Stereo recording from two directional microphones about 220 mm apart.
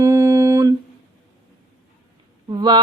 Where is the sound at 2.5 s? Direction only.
20° right (ahead or behind).